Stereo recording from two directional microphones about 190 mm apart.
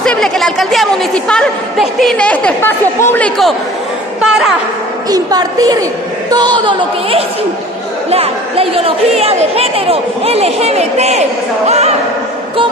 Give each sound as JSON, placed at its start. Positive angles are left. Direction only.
{"t": 0.0, "sound": "a woman's voice", "side_deg": 5}
{"t": 4.2, "sound": "a woman's voice", "side_deg": -5}
{"t": 5.1, "sound": "speech", "side_deg": -20}